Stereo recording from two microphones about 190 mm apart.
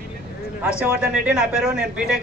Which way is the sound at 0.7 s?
5° right (ahead or behind).